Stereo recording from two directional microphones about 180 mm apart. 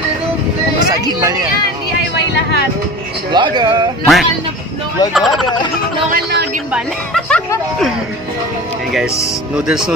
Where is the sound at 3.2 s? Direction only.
25° right (ahead or behind).